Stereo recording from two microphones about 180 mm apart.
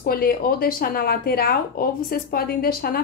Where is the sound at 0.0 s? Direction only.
55° left (ahead or behind).